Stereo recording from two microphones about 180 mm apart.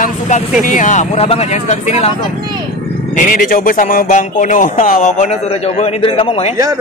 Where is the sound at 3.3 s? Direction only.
50° left (ahead or behind).